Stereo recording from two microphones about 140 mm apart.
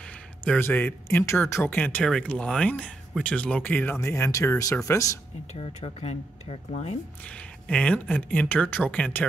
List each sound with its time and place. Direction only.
0.5 s speech: 15° left (ahead or behind)
5.6 s speech: 45° left (ahead or behind)
7.6 s speech: 10° left (ahead or behind)